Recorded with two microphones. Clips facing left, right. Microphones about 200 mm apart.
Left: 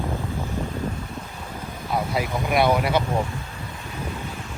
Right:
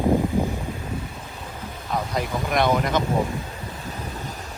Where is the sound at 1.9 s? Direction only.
5° left (ahead or behind).